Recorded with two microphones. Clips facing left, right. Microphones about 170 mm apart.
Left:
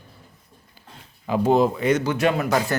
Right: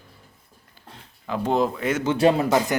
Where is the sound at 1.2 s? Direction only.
10° left (ahead or behind).